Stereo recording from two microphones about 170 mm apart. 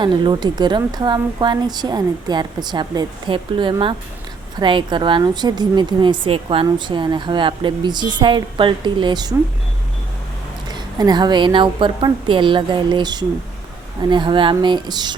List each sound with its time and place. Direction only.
0.0 s a woman's voice: 25° right (ahead or behind)
10.7 s a woman's voice: 25° right (ahead or behind)